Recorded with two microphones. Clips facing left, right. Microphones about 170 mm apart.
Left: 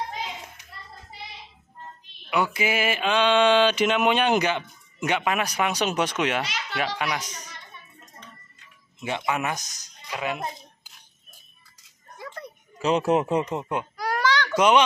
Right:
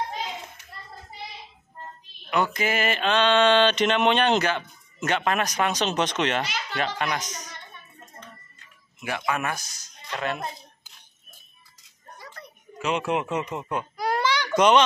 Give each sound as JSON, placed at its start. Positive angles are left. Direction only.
{"t": 2.3, "sound": "mantra", "side_deg": 10}
{"t": 9.0, "sound": "speech", "side_deg": 20}
{"t": 12.7, "sound": "speech", "side_deg": 35}
{"t": 13.6, "sound": "speech", "side_deg": 20}
{"t": 13.9, "sound": "babbling", "side_deg": -20}
{"t": 14.5, "sound": "a child's voice", "side_deg": 5}